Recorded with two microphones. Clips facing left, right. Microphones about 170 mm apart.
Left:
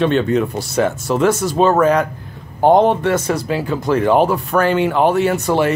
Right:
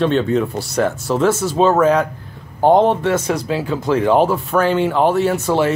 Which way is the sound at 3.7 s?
10° left (ahead or behind).